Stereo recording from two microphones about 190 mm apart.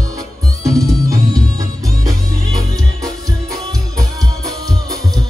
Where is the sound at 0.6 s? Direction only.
15° right (ahead or behind).